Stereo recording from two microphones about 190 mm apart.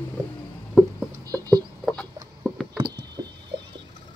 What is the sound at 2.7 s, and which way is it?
Mechanisms, 25° right (ahead or behind).